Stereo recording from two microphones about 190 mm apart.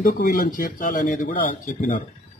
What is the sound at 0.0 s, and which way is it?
Speech, 50° left (ahead or behind).